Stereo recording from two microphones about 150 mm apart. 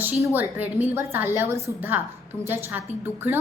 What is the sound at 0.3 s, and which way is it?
A woman's voice, 10° right (ahead or behind).